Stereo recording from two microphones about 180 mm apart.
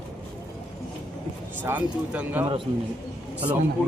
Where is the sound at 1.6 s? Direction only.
10° right (ahead or behind).